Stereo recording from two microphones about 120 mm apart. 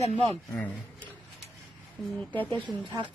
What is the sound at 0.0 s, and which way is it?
Speech, 55° right (ahead or behind).